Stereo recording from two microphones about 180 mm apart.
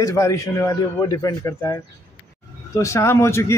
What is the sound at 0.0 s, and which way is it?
Speech, 15° left (ahead or behind).